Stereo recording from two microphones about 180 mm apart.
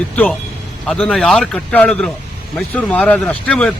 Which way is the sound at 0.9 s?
5° left (ahead or behind).